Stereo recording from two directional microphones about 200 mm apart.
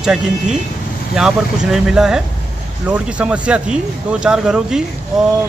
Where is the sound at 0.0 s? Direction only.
Centre (ahead or behind).